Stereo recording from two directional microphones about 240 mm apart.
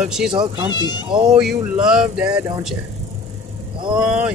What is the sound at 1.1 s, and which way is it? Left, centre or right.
Speech, right.